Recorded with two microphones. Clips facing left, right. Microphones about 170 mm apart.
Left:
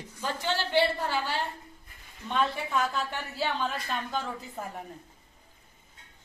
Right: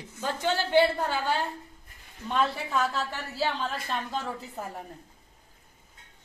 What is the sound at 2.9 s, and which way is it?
Speech, 35° right (ahead or behind).